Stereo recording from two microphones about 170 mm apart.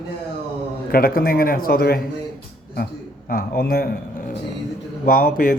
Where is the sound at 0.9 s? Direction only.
60° left (ahead or behind).